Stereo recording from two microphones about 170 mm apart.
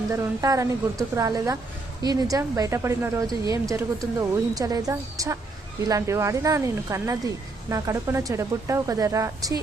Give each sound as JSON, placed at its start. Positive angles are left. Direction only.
{"t": 0.1, "sound": "speech", "side_deg": -20}